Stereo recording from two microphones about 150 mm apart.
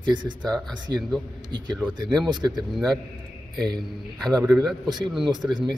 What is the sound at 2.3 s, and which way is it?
Speech, 30° right (ahead or behind).